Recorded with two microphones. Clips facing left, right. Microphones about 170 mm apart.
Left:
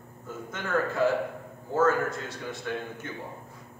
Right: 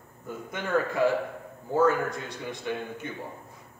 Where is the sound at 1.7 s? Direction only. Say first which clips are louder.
Right 1 dB; 15° right (ahead or behind).